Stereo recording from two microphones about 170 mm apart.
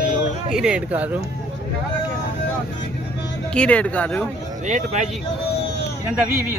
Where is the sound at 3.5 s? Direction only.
5° left (ahead or behind).